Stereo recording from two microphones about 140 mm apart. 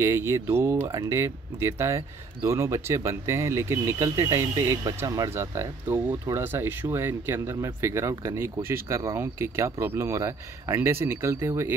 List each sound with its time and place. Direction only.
0.0 s speech: 20° right (ahead or behind)